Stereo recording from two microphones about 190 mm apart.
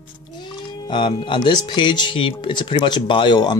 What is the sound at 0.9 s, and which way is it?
Speech, 25° left (ahead or behind).